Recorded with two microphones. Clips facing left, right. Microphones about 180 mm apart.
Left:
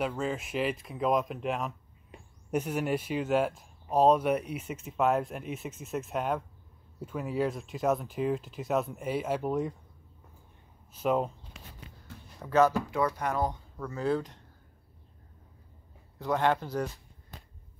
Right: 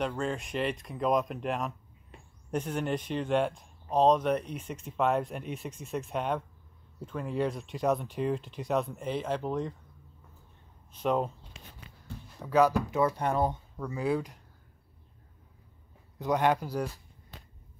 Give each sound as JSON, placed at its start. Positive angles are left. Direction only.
{"t": 0.0, "sound": "speech", "side_deg": 5}
{"t": 10.9, "sound": "speech", "side_deg": 5}
{"t": 12.4, "sound": "speech", "side_deg": -10}
{"t": 13.0, "sound": "speech", "side_deg": -30}
{"t": 16.2, "sound": "speech", "side_deg": -15}